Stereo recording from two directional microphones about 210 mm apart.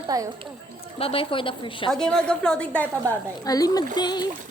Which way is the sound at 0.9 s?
25° left (ahead or behind).